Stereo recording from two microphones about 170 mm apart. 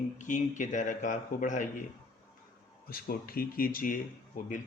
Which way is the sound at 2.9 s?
60° left (ahead or behind).